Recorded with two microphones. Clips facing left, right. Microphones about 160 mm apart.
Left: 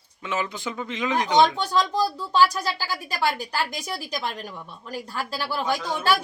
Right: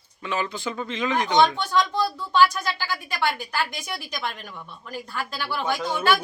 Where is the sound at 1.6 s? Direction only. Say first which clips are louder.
Even; 35° left (ahead or behind).